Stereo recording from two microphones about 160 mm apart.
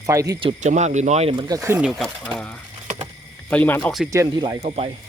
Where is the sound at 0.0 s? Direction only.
20° right (ahead or behind).